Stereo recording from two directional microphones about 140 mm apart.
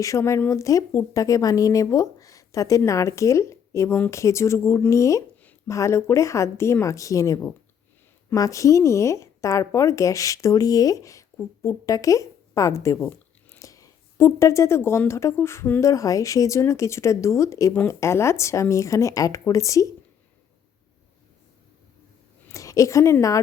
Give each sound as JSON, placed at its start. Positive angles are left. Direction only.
{"t": 0.0, "sound": "a woman's voice", "side_deg": 20}
{"t": 22.4, "sound": "a woman's voice", "side_deg": 25}